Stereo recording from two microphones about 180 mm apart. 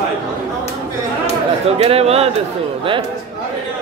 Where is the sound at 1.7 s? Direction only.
35° right (ahead or behind).